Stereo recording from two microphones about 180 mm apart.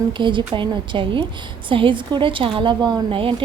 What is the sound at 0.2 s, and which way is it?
A woman's voice, 25° right (ahead or behind).